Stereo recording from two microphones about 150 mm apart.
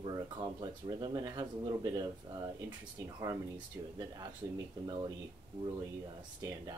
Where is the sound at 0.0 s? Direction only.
30° right (ahead or behind).